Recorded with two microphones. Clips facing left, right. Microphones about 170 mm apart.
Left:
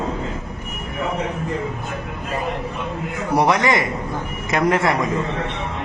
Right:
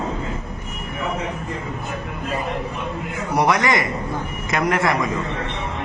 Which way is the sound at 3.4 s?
25° left (ahead or behind).